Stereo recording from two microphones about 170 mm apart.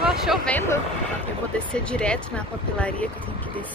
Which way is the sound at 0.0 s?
5° right (ahead or behind).